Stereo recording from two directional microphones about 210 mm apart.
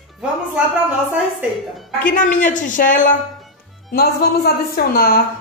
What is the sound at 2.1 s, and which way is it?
A woman's voice, 40° left (ahead or behind).